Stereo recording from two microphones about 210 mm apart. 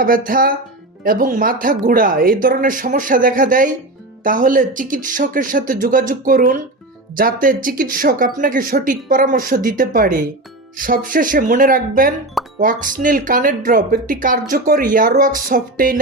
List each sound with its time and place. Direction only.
0.0 s speech: 40° right (ahead or behind)